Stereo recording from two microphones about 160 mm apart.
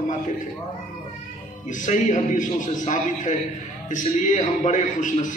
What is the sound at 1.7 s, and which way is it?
A man's voice, 50° left (ahead or behind).